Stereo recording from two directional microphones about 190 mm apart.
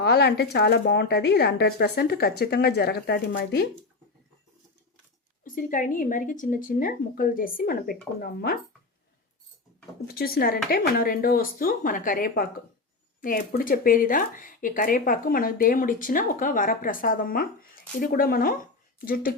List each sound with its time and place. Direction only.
0.0 s speech: 60° left (ahead or behind)
5.4 s speech: 45° left (ahead or behind)
10.1 s speech: 55° left (ahead or behind)
13.6 s speech: 45° left (ahead or behind)